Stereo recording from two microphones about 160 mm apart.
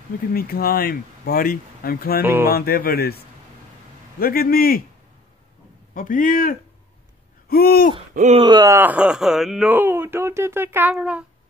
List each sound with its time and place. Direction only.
0.3 s speech: 65° left (ahead or behind)
2.2 s speech: 15° right (ahead or behind)
2.5 s speech: 70° left (ahead or behind)
5.9 s a man's voice: 60° left (ahead or behind)
7.4 s a sound: 70° left (ahead or behind)
8.1 s speech: 50° right (ahead or behind)
8.4 s speech: 25° right (ahead or behind); by 11.2 s 5° right (ahead or behind)